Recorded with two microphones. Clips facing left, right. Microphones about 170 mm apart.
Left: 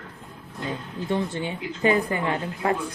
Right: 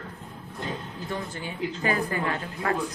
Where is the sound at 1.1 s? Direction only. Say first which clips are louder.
Left 8 dB; 25° left (ahead or behind).